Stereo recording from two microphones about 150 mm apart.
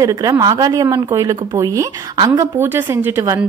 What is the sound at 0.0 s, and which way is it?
A woman's voice, 25° right (ahead or behind).